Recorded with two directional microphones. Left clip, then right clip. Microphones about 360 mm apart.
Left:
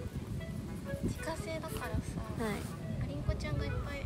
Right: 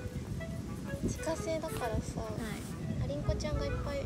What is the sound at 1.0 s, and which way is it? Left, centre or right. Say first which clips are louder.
Speech: right 6 dB; centre.